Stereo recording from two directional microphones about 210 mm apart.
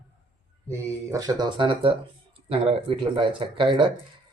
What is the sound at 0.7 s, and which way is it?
Speech, 15° right (ahead or behind).